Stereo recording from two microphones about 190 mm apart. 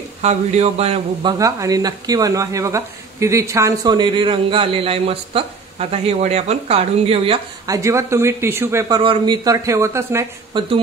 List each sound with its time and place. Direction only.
0.2 s speech: 35° right (ahead or behind)
1.4 s speech: 20° right (ahead or behind)
7.6 s speech: 15° right (ahead or behind)